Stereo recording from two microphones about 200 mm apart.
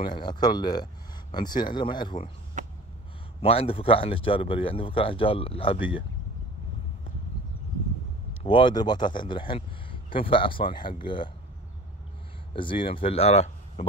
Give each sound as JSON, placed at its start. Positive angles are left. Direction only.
{"t": 0.1, "sound": "speech", "side_deg": 20}
{"t": 2.6, "sound": "snort", "side_deg": -40}
{"t": 3.4, "sound": "speech", "side_deg": 30}
{"t": 8.5, "sound": "speech", "side_deg": 25}
{"t": 12.5, "sound": "speech", "side_deg": 25}